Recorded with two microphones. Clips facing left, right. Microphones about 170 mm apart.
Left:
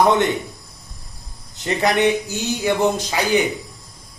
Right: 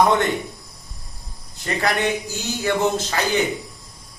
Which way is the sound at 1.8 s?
20° left (ahead or behind).